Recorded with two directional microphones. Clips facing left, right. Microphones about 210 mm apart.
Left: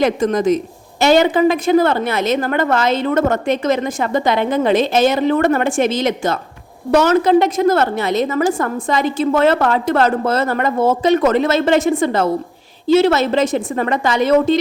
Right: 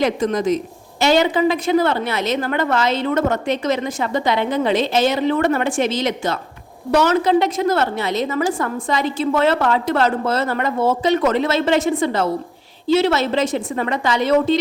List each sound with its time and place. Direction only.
0.0 s speech: 50° left (ahead or behind)